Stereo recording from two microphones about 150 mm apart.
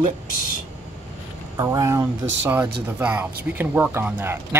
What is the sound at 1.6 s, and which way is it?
Speech, 20° right (ahead or behind).